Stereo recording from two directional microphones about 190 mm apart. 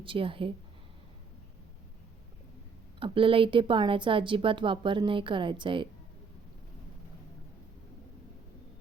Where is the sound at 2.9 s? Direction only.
25° right (ahead or behind).